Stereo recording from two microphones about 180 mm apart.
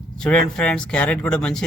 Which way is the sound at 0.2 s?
5° left (ahead or behind).